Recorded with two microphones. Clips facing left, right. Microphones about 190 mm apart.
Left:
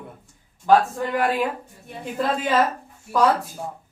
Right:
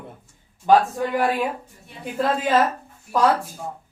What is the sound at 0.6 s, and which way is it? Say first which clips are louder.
Speech: right 1 dB; 15° right (ahead or behind).